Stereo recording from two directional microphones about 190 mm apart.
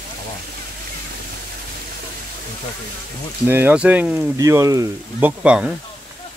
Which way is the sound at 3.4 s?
10° right (ahead or behind).